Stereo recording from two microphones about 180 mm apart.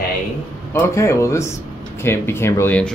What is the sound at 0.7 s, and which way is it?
Speech, 15° left (ahead or behind).